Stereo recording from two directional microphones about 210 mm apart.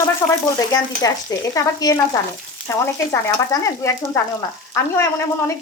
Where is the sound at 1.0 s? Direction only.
15° left (ahead or behind).